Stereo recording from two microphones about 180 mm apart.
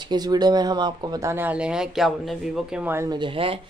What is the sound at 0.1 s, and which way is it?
Speech, 20° right (ahead or behind).